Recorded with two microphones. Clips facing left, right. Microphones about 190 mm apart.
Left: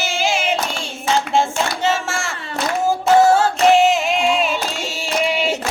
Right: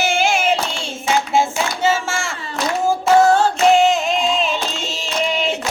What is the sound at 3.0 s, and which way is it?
Music, 5° left (ahead or behind).